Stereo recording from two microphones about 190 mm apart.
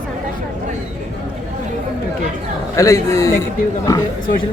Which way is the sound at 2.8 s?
15° left (ahead or behind).